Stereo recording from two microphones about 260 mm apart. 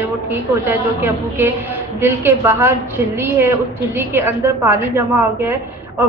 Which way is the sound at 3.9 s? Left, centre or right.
Centre.